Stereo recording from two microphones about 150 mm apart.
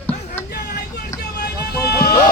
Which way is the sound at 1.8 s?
90° left.